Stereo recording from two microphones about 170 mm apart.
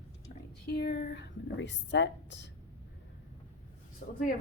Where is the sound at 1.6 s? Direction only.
90° left.